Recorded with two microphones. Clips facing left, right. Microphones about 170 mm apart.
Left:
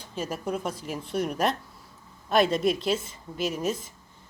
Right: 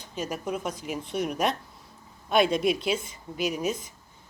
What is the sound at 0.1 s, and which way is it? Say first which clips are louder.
A woman's voice: left 1 dB; 5° left (ahead or behind).